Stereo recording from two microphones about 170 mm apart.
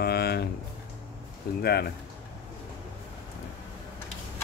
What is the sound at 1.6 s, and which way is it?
Speech, 65° left (ahead or behind).